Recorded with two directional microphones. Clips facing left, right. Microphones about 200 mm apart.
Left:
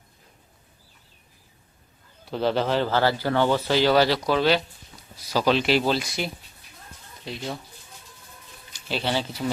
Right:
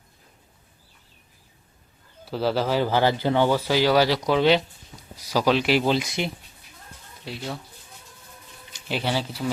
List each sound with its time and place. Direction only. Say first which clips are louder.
2.2 s speech: even; 5° right (ahead or behind); by 6.3 s 20° right (ahead or behind)
7.3 s speech: left 1 dB; 5° right (ahead or behind)
8.7 s speech: even; 15° right (ahead or behind)